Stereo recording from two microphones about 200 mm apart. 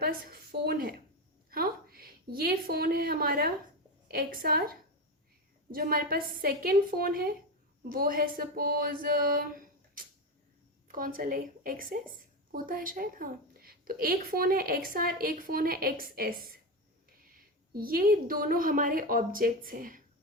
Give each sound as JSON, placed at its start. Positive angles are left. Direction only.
{"t": 0.0, "sound": "a woman's voice", "side_deg": -50}